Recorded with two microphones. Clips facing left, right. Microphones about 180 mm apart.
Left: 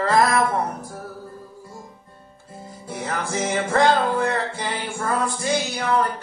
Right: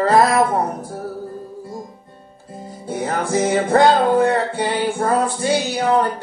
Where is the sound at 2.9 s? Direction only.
35° right (ahead or behind).